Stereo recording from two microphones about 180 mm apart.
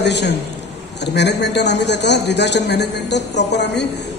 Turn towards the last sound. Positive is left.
turn(degrees=70)  # may be behind; listen again after turning